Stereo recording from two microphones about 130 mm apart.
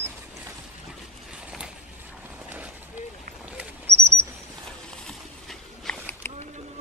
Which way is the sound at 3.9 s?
55° right (ahead or behind).